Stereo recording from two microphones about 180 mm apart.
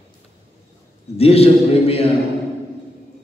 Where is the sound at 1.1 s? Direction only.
35° left (ahead or behind).